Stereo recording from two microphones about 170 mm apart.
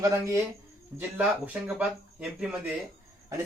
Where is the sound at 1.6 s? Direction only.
5° right (ahead or behind).